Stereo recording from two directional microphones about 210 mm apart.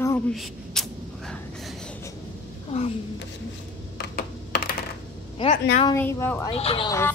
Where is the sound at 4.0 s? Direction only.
50° left (ahead or behind).